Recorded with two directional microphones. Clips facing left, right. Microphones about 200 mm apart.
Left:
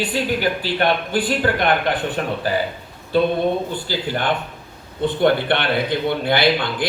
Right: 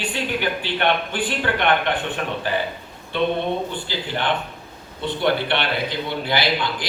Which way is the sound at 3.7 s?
45° left (ahead or behind).